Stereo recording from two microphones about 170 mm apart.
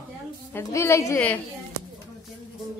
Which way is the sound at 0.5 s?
15° left (ahead or behind).